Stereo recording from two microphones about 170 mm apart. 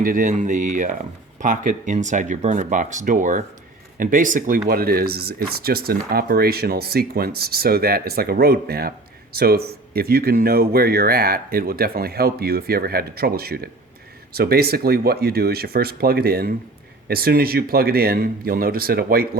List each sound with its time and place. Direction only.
0.0 s speech: 50° right (ahead or behind)